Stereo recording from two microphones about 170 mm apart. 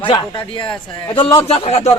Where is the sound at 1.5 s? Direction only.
35° left (ahead or behind).